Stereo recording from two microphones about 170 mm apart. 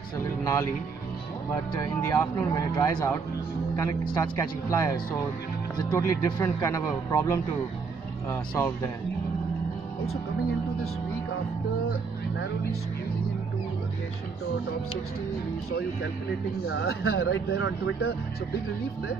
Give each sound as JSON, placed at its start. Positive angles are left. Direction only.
{"t": 0.4, "sound": "speech", "side_deg": 20}
{"t": 1.8, "sound": "speech", "side_deg": 15}
{"t": 16.6, "sound": "speech", "side_deg": 75}